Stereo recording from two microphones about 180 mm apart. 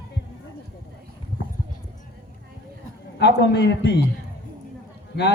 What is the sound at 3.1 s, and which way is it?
Speech, 70° left (ahead or behind).